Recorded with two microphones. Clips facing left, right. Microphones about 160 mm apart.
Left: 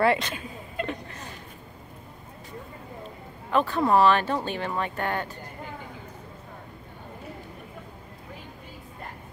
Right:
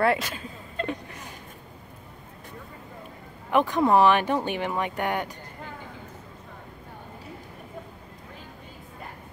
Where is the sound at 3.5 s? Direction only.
15° right (ahead or behind).